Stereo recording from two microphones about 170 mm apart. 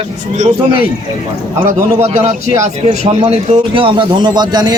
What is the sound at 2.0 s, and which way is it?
A man's voice, 40° right (ahead or behind).